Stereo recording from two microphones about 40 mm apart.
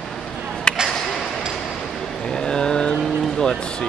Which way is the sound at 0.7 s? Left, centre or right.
Centre.